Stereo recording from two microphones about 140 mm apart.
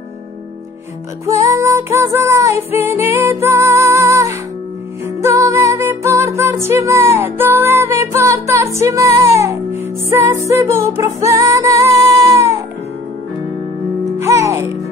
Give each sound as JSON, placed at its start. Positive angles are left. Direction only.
{"t": 1.2, "sound": "music", "side_deg": -20}
{"t": 14.2, "sound": "music", "side_deg": -20}